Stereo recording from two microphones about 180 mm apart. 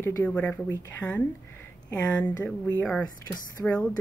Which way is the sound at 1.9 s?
5° left (ahead or behind).